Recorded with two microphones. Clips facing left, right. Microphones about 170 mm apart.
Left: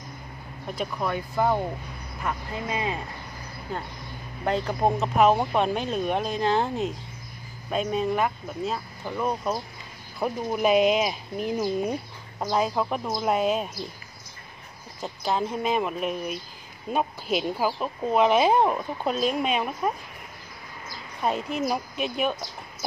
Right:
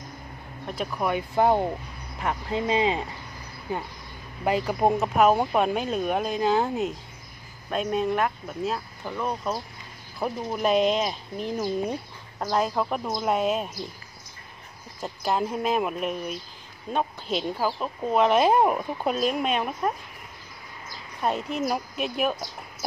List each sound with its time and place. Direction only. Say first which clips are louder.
0.7 s speech: even; centre (ahead or behind)
1.0 s speech: right 3 dB; 20° right (ahead or behind); by 13.7 s centre (ahead or behind)
15.0 s speech: right 1 dB; 5° right (ahead or behind)
21.2 s speech: even; centre (ahead or behind)